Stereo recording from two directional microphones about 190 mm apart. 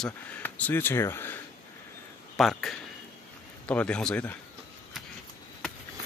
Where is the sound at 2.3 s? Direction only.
Centre (ahead or behind).